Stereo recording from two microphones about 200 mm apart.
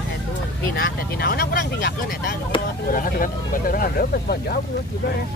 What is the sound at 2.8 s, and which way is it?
Speech, 45° left (ahead or behind).